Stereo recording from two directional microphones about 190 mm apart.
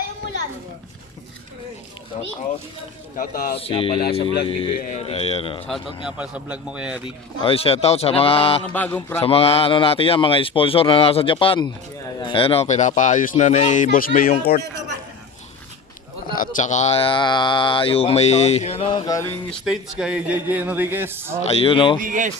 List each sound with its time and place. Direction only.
3.2 s speech: 50° left (ahead or behind)
3.5 s speech: 30° left (ahead or behind)
6.1 s speech: 5° right (ahead or behind)
7.0 s speech: 30° left (ahead or behind)
8.6 s speech: 10° left (ahead or behind)
9.2 s speech: 30° left (ahead or behind); by 14.6 s 50° left (ahead or behind)
16.3 s speech: 45° left (ahead or behind); by 19.2 s 20° left (ahead or behind)
19.5 s speech: centre (ahead or behind)
21.5 s speech: 30° left (ahead or behind)
22.0 s speech: 45° right (ahead or behind)